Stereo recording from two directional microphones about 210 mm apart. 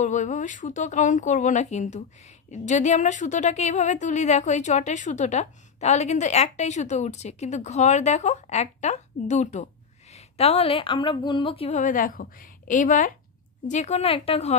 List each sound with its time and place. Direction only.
0.0 s a woman's voice: 35° left (ahead or behind)